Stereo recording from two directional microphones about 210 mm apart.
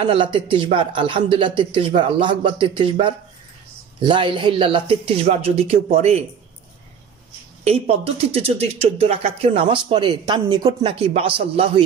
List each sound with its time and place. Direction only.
0.0 s speech: 25° right (ahead or behind)
7.6 s speech: 30° right (ahead or behind)